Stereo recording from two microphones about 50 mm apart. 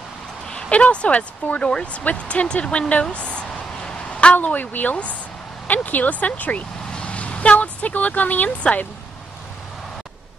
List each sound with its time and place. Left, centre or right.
0.7 s speech: left
2.9 s a sound: left
4.6 s speech: left
6.9 s vehicle: left